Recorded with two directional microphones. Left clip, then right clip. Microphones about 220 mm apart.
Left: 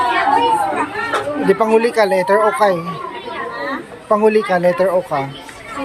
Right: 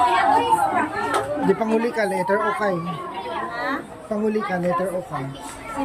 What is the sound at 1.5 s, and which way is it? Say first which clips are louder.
Speech: left 10 dB; 5° right (ahead or behind).